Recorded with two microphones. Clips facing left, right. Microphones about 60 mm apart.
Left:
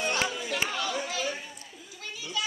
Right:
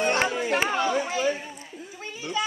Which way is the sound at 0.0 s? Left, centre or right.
Right.